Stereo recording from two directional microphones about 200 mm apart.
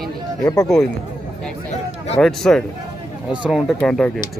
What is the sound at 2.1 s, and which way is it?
Speech, 5° left (ahead or behind).